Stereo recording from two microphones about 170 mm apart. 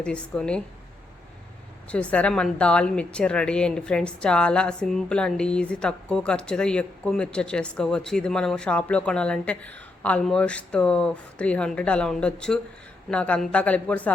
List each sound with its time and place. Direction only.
0.0 s speech: 5° left (ahead or behind)
1.9 s a woman's voice: 5° left (ahead or behind)